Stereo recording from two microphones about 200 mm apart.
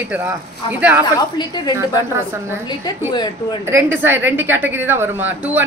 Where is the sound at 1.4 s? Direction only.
20° left (ahead or behind).